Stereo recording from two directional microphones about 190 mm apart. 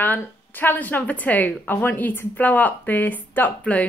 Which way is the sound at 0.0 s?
10° left (ahead or behind).